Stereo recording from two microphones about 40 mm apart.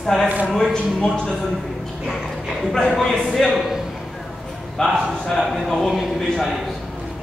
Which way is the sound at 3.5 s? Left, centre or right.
Centre.